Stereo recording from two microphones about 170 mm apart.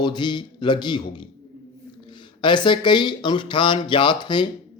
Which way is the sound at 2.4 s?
30° left (ahead or behind).